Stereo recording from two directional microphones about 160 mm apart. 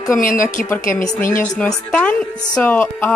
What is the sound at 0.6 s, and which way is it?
A woman's voice, 10° left (ahead or behind).